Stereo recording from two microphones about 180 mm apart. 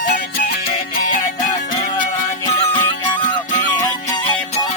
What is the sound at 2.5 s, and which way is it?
Music, 30° left (ahead or behind).